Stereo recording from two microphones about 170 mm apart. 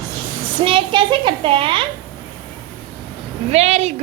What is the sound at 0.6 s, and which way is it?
A woman's voice, 30° right (ahead or behind).